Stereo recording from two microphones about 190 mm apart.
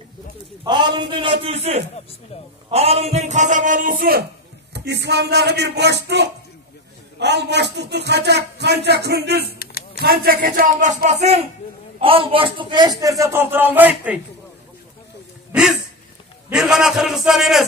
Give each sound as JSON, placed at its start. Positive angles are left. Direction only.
{"t": 0.7, "sound": "a man's voice", "side_deg": -25}
{"t": 4.7, "sound": "a man's voice", "side_deg": -60}
{"t": 16.4, "sound": "a man's voice", "side_deg": -5}